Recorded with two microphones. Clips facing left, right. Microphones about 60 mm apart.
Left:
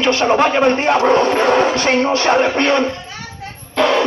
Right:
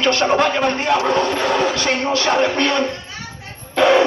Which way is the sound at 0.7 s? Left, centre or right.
Left.